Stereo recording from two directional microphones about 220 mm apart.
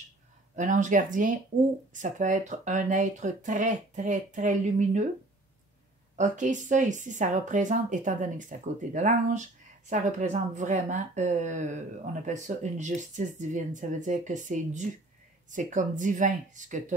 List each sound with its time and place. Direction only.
0.6 s speech: 35° right (ahead or behind)
6.1 s speech: 35° right (ahead or behind)